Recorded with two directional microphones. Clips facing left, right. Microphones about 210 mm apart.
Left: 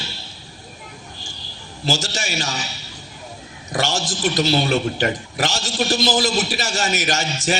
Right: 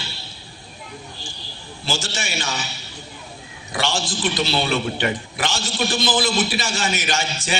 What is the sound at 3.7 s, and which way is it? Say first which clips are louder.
A man's voice: left 2 dB; 45° left (ahead or behind).